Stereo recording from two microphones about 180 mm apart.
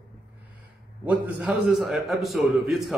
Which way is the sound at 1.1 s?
10° right (ahead or behind).